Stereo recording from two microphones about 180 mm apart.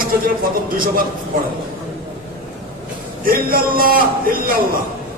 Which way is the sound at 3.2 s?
55° right (ahead or behind).